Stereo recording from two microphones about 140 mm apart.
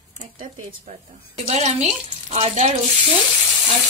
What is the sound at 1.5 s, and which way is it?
Speech, 50° right (ahead or behind).